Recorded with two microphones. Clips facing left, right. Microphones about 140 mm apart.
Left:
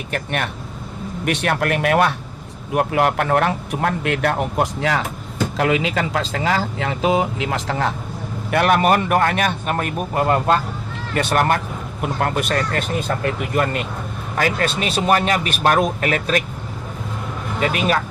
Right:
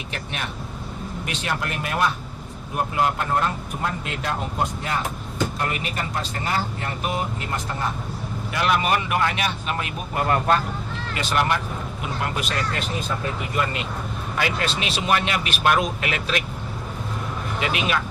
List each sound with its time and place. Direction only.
0.1 s speech: 55° left (ahead or behind); by 7.9 s 90° left
8.4 s a man's voice: 55° left (ahead or behind)
10.2 s speech: 30° left (ahead or behind)
11.1 s a man's voice: 55° left (ahead or behind)
17.6 s speech: 40° left (ahead or behind)